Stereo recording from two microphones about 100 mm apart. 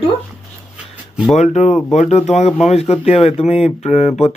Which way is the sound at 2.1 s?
90° left.